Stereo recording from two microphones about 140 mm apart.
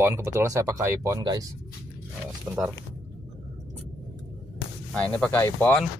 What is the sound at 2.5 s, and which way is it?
Speech, 10° right (ahead or behind).